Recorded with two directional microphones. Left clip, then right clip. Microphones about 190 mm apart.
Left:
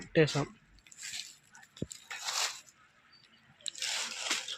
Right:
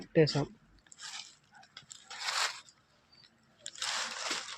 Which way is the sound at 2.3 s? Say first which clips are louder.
Right 2 dB; 20° left (ahead or behind).